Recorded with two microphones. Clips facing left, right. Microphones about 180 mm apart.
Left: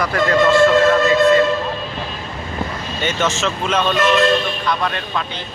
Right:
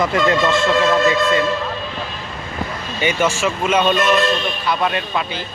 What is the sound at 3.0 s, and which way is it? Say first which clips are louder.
Speech: right 2 dB; 10° right (ahead or behind).